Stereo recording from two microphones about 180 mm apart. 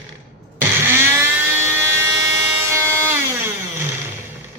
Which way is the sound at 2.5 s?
15° right (ahead or behind).